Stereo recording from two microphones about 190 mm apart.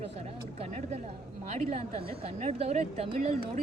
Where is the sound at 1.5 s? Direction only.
35° right (ahead or behind).